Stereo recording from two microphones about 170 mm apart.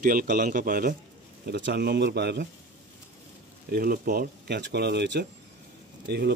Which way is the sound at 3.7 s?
60° right (ahead or behind).